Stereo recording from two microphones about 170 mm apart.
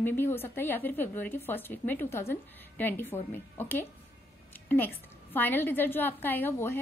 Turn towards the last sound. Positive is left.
turn(degrees=15)  # may be behind; listen again after turning